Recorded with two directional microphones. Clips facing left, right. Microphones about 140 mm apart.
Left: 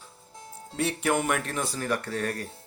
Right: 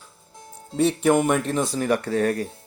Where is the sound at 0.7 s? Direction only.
25° right (ahead or behind).